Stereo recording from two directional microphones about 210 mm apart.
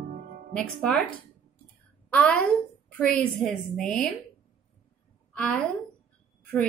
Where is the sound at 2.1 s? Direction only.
5° left (ahead or behind).